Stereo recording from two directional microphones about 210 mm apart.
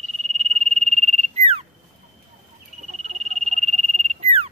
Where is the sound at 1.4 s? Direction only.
30° right (ahead or behind).